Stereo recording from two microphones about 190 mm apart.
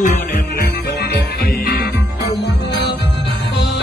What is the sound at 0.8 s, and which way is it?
Music, 55° left (ahead or behind).